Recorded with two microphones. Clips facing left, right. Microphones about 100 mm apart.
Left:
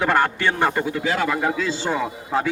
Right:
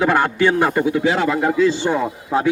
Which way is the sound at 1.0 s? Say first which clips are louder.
Right 4 dB; 20° right (ahead or behind).